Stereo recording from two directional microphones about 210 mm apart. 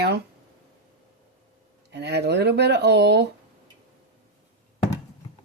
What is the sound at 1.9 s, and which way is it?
Speech, 55° right (ahead or behind).